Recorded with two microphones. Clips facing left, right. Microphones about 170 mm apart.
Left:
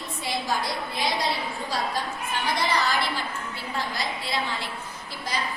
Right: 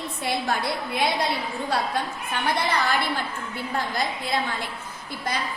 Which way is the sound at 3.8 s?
50° right (ahead or behind).